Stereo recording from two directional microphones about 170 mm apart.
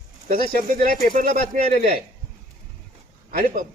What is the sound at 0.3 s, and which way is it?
A man's voice, 60° right (ahead or behind).